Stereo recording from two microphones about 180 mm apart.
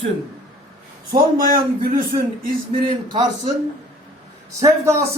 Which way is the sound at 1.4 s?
55° right (ahead or behind).